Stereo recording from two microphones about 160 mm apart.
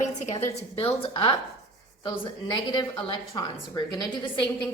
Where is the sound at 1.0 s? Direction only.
35° left (ahead or behind).